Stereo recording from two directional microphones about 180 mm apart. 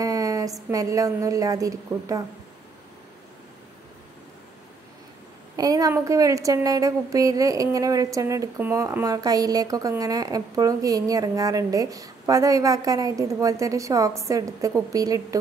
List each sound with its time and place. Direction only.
0.0 s a woman's voice: 20° right (ahead or behind)
5.6 s a woman's voice: 20° right (ahead or behind)